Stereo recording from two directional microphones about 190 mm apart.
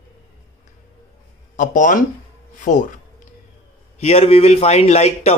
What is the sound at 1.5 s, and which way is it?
A man's voice, 45° left (ahead or behind).